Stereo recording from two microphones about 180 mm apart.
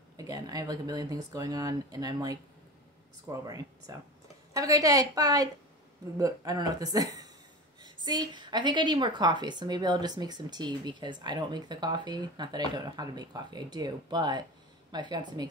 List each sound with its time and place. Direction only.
0.2 s a woman's voice: 20° right (ahead or behind)